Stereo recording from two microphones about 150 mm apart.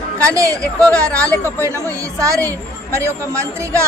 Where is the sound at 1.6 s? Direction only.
20° right (ahead or behind).